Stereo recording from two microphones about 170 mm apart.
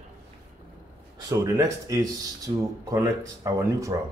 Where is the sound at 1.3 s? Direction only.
20° right (ahead or behind).